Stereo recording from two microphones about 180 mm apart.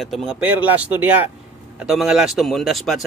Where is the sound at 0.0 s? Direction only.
Centre (ahead or behind).